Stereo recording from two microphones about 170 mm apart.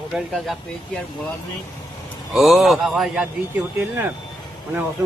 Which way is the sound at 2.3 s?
Centre (ahead or behind).